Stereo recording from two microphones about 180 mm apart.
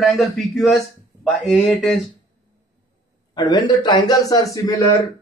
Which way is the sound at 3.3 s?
25° left (ahead or behind).